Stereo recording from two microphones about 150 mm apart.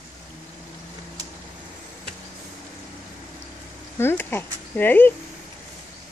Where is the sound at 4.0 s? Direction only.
15° left (ahead or behind).